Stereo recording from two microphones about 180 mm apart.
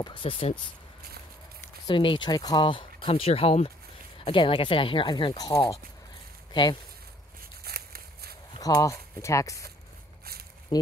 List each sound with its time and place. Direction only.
0.0 s speech: 30° left (ahead or behind)
1.9 s speech: 25° left (ahead or behind)
7.6 s a sound: 60° right (ahead or behind)
8.5 s speech: 20° left (ahead or behind)
10.7 s frying: 25° left (ahead or behind)